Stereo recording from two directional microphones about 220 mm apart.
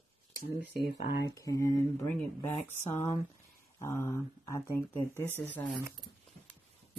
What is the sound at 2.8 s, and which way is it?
Speech, 30° left (ahead or behind).